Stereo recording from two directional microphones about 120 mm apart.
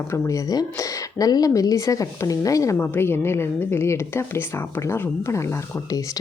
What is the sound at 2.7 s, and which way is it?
Speech, 15° left (ahead or behind).